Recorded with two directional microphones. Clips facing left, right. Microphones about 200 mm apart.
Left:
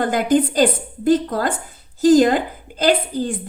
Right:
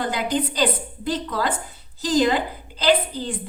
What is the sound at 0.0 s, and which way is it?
A woman's voice, 50° left (ahead or behind).